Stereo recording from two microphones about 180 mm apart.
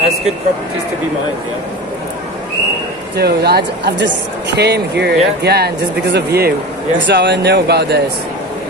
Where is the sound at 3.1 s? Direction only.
65° right (ahead or behind).